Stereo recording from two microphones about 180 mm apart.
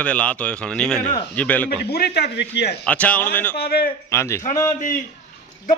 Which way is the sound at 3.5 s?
60° left (ahead or behind).